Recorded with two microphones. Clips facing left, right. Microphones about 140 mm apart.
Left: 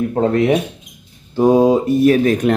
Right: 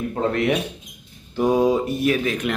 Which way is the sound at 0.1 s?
35° left (ahead or behind).